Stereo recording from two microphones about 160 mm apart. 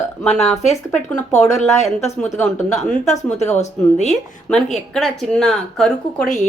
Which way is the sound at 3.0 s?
45° left (ahead or behind).